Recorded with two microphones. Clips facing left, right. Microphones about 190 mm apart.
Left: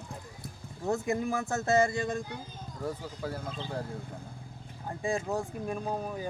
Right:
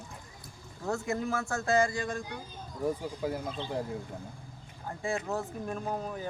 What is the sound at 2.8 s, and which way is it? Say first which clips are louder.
Speech: right 4 dB; 15° right (ahead or behind).